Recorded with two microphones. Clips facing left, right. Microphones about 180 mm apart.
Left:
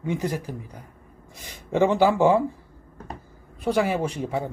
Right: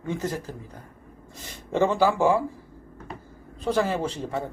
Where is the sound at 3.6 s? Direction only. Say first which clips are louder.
Left 2 dB; 10° left (ahead or behind).